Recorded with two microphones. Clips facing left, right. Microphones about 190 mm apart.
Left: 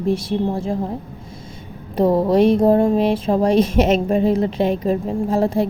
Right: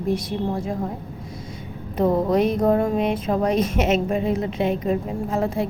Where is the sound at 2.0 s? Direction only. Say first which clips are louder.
Left 4 dB; 35° left (ahead or behind).